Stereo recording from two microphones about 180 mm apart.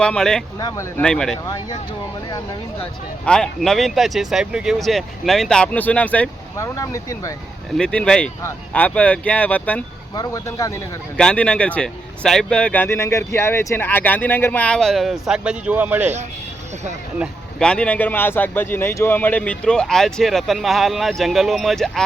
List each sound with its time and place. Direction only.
0.0 s speech: 5° left (ahead or behind)
0.6 s speech: 15° left (ahead or behind)
1.0 s speech: 5° left (ahead or behind)
1.5 s speech: 20° left (ahead or behind)
3.2 s speech: 5° left (ahead or behind)
7.8 s speech: 5° left (ahead or behind)
10.2 s speech: 20° left (ahead or behind)
11.2 s speech: 5° left (ahead or behind); by 16.1 s 10° right (ahead or behind)
17.6 s speech: 5° left (ahead or behind)